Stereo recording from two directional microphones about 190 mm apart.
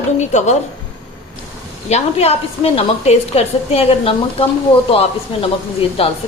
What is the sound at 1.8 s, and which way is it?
A woman's voice, 35° left (ahead or behind).